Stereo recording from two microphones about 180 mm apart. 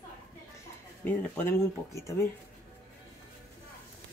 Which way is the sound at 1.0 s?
10° left (ahead or behind).